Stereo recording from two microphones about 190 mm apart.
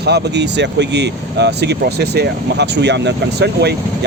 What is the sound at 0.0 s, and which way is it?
Speech, 60° right (ahead or behind).